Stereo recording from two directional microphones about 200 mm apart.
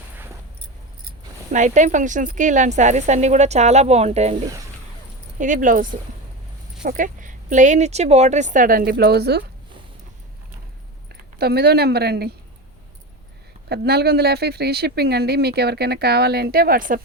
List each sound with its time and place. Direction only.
1.5 s speech: 35° right (ahead or behind); by 9.4 s 55° right (ahead or behind)
11.1 s speech: 50° right (ahead or behind)
13.7 s speech: 55° right (ahead or behind)